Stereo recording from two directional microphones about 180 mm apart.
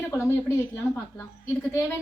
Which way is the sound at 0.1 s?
15° left (ahead or behind).